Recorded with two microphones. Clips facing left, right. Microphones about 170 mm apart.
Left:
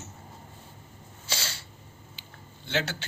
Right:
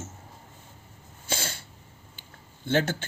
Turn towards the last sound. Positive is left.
turn(degrees=-50)  # may be behind; listen again after turning